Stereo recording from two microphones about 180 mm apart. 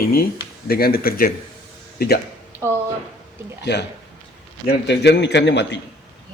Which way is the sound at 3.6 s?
70° left (ahead or behind).